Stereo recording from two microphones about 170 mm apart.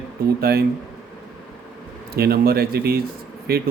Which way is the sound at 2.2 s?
65° right (ahead or behind).